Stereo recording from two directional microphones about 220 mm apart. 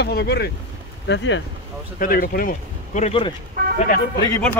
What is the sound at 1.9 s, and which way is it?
Speech, 40° left (ahead or behind).